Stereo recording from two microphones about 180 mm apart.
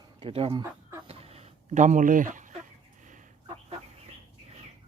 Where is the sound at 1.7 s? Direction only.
45° right (ahead or behind).